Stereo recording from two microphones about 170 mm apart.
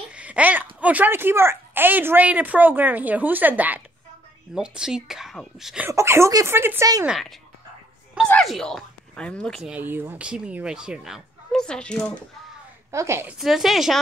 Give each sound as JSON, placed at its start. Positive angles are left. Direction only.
{"t": 0.1, "sound": "speech", "side_deg": -10}
{"t": 5.9, "sound": "speech", "side_deg": -15}
{"t": 7.1, "sound": "speech", "side_deg": 0}
{"t": 9.7, "sound": "speech", "side_deg": -10}
{"t": 12.9, "sound": "speech", "side_deg": -15}
{"t": 13.4, "sound": "speech", "side_deg": 0}